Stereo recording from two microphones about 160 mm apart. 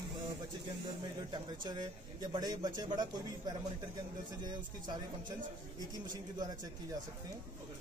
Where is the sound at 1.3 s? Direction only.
30° right (ahead or behind).